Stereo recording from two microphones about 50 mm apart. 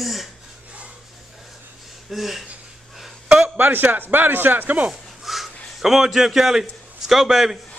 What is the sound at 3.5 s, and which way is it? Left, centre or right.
Speech, right.